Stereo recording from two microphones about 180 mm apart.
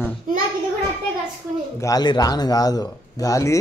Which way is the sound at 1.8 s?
20° left (ahead or behind).